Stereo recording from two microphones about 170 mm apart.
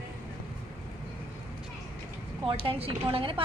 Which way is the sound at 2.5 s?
35° right (ahead or behind).